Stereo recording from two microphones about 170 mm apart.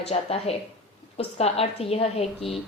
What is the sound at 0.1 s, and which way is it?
A woman's voice, 35° left (ahead or behind).